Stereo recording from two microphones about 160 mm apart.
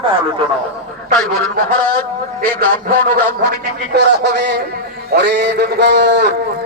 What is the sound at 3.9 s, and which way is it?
A man's voice, 90° right.